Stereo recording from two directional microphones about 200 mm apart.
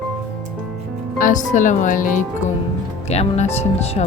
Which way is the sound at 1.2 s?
40° left (ahead or behind).